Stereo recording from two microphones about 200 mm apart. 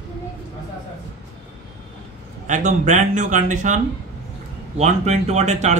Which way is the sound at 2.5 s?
40° right (ahead or behind).